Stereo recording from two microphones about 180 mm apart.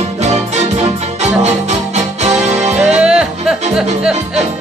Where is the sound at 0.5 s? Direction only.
40° right (ahead or behind).